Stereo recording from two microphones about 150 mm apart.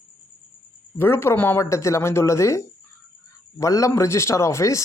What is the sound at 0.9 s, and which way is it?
A man's voice, 15° left (ahead or behind).